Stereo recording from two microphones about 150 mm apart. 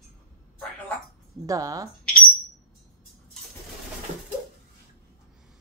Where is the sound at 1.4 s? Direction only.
20° right (ahead or behind).